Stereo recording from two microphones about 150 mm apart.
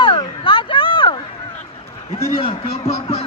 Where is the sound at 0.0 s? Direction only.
35° left (ahead or behind).